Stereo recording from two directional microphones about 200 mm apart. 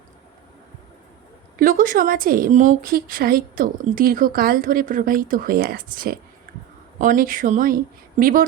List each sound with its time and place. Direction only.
1.5 s a woman's voice: 45° right (ahead or behind)